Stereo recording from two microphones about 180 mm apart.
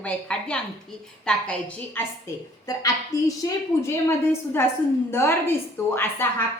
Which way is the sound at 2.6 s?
20° left (ahead or behind).